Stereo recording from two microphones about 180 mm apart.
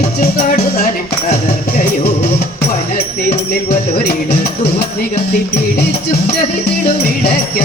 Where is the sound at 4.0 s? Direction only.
60° left (ahead or behind).